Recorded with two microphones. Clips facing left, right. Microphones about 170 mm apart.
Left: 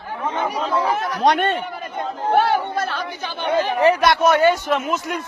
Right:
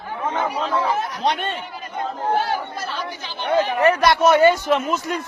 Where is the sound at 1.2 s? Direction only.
45° left (ahead or behind).